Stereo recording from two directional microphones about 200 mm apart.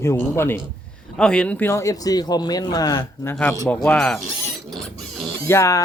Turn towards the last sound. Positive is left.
turn(degrees=15)  # may be behind; listen again after turning